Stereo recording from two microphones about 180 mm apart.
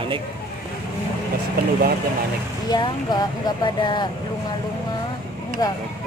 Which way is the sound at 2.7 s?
25° left (ahead or behind).